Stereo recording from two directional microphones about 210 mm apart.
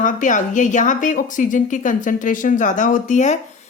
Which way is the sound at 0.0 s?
35° left (ahead or behind).